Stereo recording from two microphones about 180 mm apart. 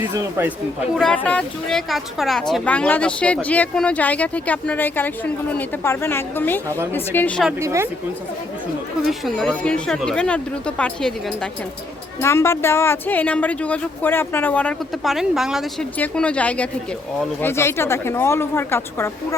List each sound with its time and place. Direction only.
0.1 s a man's voice: 15° right (ahead or behind)
0.9 s speech: 5° left (ahead or behind)
7.6 s a man's voice: 15° right (ahead or behind)
9.0 s speech: centre (ahead or behind)
12.2 s speech: 15° left (ahead or behind)